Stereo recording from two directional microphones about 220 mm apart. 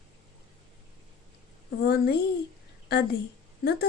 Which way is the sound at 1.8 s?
45° left (ahead or behind).